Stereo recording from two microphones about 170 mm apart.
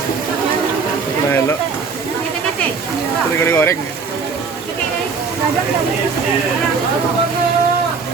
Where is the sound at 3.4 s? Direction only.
15° left (ahead or behind).